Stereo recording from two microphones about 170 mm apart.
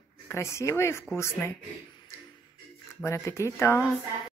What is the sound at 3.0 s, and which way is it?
Speech, 15° left (ahead or behind).